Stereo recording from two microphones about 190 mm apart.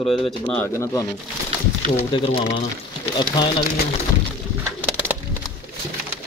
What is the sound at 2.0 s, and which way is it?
Speech, 25° left (ahead or behind).